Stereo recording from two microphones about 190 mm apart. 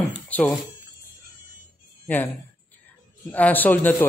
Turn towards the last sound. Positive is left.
turn(degrees=10)  # may be behind; listen again after turning